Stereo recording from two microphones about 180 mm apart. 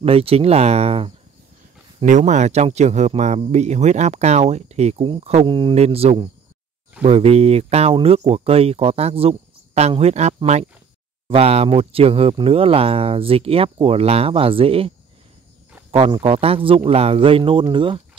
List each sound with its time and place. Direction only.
0.0 s speech: 30° right (ahead or behind)
15.9 s speech: 30° right (ahead or behind)